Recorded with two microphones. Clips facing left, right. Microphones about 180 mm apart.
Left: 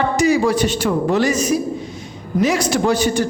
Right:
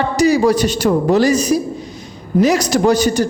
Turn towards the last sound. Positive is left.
turn(degrees=-40)  # may be behind; listen again after turning